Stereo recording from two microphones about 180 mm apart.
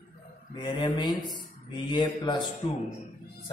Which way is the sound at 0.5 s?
25° left (ahead or behind).